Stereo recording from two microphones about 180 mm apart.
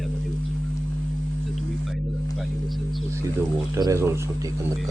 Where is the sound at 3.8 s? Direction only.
15° right (ahead or behind).